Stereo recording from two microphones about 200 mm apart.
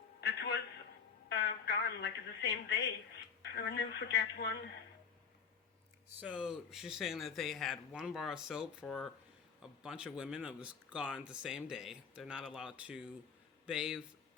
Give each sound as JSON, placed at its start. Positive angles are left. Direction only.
{"t": 0.2, "sound": "a sound", "side_deg": 55}
{"t": 3.5, "sound": "speech", "side_deg": 55}
{"t": 6.1, "sound": "speech", "side_deg": -5}